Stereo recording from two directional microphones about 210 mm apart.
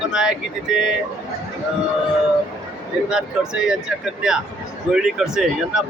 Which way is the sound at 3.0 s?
5° right (ahead or behind).